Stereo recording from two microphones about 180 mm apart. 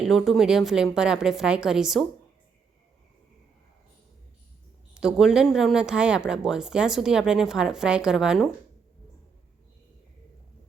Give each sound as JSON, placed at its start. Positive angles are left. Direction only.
{"t": 0.0, "sound": "speech", "side_deg": 0}
{"t": 4.9, "sound": "speech", "side_deg": -5}